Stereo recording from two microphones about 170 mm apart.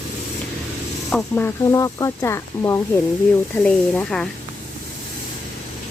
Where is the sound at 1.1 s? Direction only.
10° left (ahead or behind).